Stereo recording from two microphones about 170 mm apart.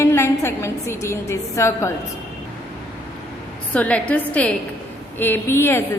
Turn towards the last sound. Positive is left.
turn(degrees=15)  # may be behind; listen again after turning